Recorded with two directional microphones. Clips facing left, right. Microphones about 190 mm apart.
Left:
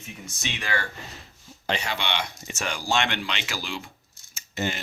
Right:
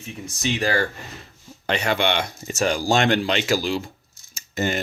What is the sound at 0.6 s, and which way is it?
Speech, 35° right (ahead or behind).